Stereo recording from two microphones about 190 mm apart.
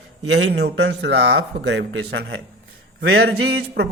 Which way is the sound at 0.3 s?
65° right (ahead or behind).